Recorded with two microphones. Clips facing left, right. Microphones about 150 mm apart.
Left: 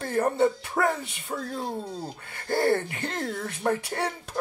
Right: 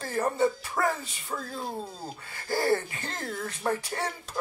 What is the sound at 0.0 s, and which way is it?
Speech, 55° left (ahead or behind).